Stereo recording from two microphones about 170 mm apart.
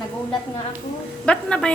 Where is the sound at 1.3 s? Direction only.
5° left (ahead or behind).